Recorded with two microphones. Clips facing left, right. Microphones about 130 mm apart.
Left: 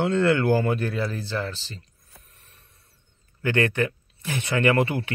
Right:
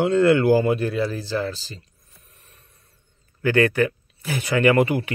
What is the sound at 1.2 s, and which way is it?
Speech, 35° right (ahead or behind).